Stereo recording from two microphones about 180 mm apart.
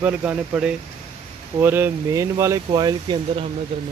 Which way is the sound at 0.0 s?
10° right (ahead or behind).